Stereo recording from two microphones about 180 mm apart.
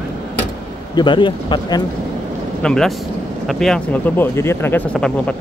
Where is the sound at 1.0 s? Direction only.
25° left (ahead or behind).